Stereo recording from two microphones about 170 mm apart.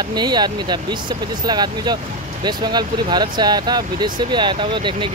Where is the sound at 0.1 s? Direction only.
25° right (ahead or behind).